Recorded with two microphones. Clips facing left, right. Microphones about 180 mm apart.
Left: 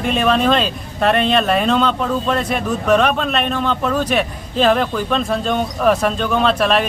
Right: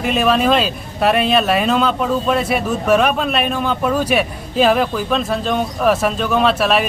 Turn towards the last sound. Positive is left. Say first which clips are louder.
# even
turn(degrees=-5)  # may be behind; listen again after turning